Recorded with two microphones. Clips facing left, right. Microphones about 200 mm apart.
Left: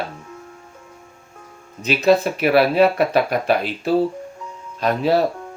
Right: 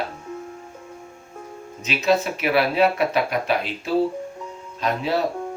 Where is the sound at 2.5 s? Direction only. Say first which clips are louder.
Left 4 dB; 45° left (ahead or behind).